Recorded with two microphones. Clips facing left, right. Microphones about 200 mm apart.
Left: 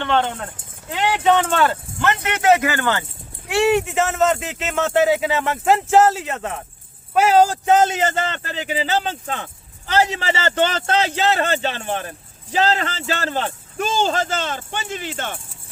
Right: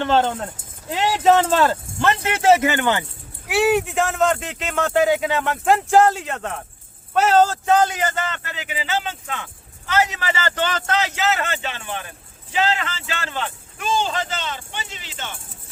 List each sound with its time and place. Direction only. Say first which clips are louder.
0.0 s speech: right 2 dB; 35° right (ahead or behind); by 3.0 s 20° right (ahead or behind)
3.5 s a man's voice: left 1 dB; centre (ahead or behind); by 15.3 s 50° left (ahead or behind)